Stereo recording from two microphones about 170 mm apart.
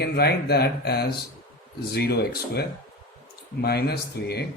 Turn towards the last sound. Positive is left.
turn(degrees=70)  # may be behind; listen again after turning